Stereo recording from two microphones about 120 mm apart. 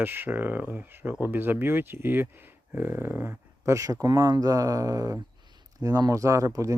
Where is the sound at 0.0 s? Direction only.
15° right (ahead or behind).